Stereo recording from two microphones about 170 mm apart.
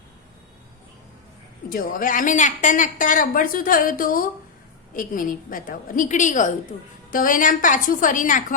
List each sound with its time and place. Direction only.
1.7 s a woman's voice: 55° left (ahead or behind)